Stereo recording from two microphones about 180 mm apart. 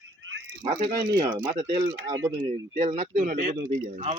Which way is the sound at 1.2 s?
25° right (ahead or behind).